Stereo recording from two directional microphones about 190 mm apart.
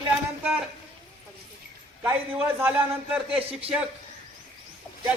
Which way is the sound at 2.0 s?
10° right (ahead or behind).